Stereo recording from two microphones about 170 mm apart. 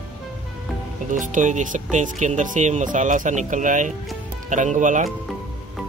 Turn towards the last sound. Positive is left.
turn(degrees=-45)  # may be behind; listen again after turning